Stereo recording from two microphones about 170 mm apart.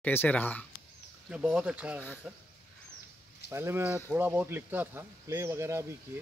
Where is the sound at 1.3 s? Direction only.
5° right (ahead or behind).